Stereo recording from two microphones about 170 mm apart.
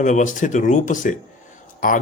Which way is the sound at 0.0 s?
45° left (ahead or behind).